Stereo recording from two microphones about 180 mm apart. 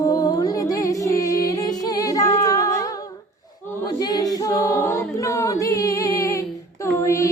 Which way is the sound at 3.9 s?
20° left (ahead or behind).